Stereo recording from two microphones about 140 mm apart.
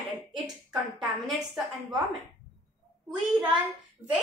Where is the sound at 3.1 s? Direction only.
5° right (ahead or behind).